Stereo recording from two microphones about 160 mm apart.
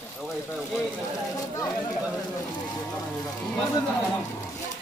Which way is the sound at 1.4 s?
20° left (ahead or behind).